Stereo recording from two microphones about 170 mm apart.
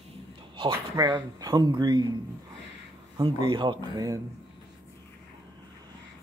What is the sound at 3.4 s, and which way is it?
Speech, 25° right (ahead or behind).